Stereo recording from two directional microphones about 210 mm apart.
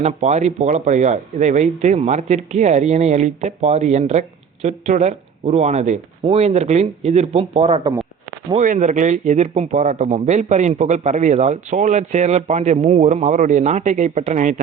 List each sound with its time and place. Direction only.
0.0 s speech: 30° right (ahead or behind)